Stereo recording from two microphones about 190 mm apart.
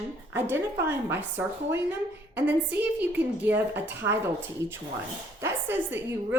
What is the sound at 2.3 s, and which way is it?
A woman's voice, 10° right (ahead or behind).